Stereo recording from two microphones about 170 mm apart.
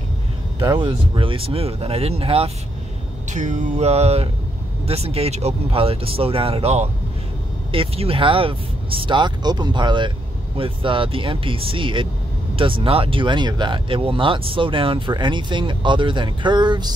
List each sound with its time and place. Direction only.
0.6 s speech: 25° right (ahead or behind)
3.3 s speech: 45° right (ahead or behind); by 16.9 s 25° right (ahead or behind)